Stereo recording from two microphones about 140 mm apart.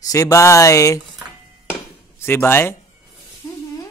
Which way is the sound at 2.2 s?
15° left (ahead or behind).